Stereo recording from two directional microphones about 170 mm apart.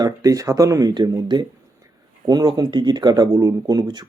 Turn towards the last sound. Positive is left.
turn(degrees=-25)  # may be behind; listen again after turning